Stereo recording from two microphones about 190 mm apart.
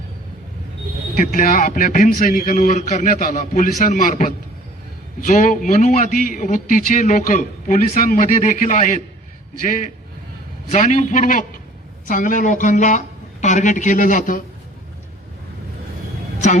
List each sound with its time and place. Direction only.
1.1 s a man's voice: 50° left (ahead or behind)
10.7 s a man's voice: 40° left (ahead or behind)